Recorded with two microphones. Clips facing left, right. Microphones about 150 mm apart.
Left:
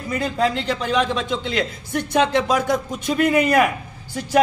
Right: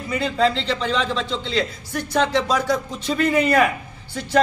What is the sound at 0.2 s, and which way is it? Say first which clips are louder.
A man's voice: right 1 dB; 10° left (ahead or behind).